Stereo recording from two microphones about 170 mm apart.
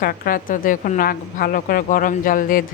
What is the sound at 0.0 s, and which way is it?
Speech, 60° left (ahead or behind).